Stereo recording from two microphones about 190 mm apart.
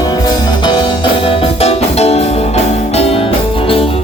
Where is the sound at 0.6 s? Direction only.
25° left (ahead or behind).